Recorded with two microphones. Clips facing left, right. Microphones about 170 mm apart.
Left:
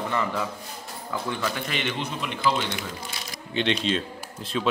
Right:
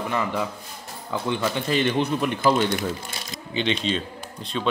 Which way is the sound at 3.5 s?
Centre (ahead or behind).